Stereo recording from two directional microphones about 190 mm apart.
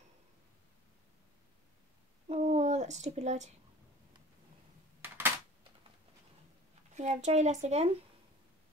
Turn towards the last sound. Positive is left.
turn(degrees=-35)  # may be behind; listen again after turning